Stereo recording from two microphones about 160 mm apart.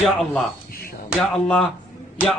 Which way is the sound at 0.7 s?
65° left (ahead or behind).